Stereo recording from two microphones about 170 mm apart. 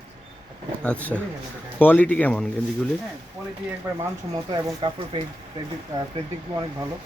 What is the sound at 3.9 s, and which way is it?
Speech, 10° right (ahead or behind).